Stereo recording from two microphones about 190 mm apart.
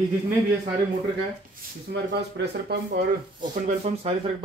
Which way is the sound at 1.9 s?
60° right (ahead or behind).